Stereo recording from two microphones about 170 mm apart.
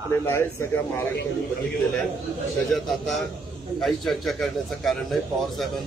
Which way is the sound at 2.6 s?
Centre (ahead or behind).